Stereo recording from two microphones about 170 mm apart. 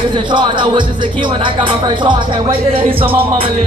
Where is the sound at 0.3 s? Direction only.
30° right (ahead or behind).